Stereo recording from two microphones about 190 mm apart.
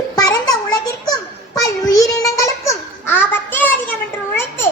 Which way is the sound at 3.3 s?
10° left (ahead or behind).